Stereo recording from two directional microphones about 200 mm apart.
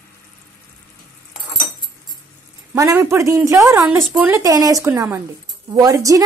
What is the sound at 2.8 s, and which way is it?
Speech, 15° right (ahead or behind).